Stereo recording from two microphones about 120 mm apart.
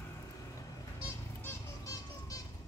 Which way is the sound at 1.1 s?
25° left (ahead or behind).